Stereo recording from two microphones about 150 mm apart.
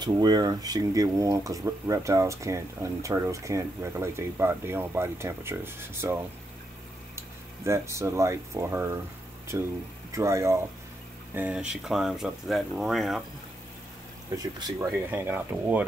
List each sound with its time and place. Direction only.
0.0 s speech: 25° right (ahead or behind)
7.6 s speech: 20° right (ahead or behind); by 13.2 s centre (ahead or behind)
14.3 s speech: 25° right (ahead or behind)
14.9 s speech: 10° right (ahead or behind)